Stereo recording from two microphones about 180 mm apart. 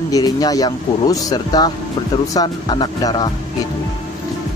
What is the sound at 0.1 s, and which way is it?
Speech, 20° left (ahead or behind).